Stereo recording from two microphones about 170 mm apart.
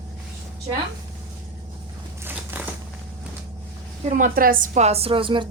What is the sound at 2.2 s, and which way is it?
Crushing, 10° right (ahead or behind).